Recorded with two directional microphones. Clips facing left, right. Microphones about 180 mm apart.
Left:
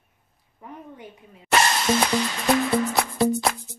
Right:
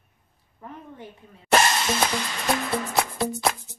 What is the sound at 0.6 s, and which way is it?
Speech, 15° left (ahead or behind).